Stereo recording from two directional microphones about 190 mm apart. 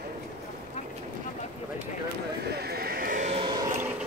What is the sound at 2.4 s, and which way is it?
Sheep, 55° right (ahead or behind).